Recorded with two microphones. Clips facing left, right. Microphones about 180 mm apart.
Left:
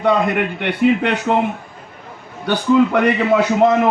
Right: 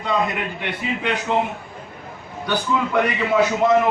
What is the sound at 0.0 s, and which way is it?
Speech, 60° left (ahead or behind).